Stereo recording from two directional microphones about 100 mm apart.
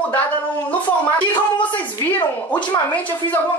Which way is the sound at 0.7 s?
15° left (ahead or behind).